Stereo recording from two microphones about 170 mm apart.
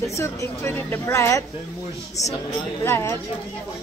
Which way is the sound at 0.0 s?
15° left (ahead or behind).